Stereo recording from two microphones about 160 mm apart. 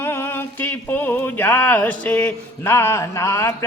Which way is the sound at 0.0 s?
15° left (ahead or behind).